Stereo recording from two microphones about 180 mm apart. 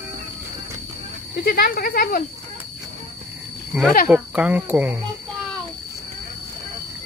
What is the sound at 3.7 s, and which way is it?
Cricket, 10° right (ahead or behind).